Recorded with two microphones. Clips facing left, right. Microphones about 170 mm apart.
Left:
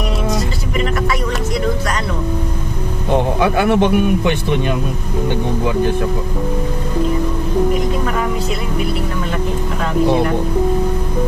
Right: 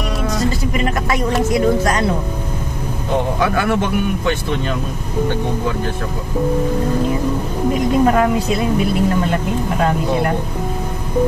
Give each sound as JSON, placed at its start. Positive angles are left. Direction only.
{"t": 3.3, "sound": "speech", "side_deg": 20}